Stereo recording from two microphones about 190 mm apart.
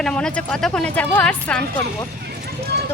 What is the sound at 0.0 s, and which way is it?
Speech, 5° left (ahead or behind).